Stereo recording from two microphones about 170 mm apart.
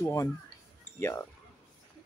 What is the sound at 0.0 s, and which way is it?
Speech, 20° left (ahead or behind).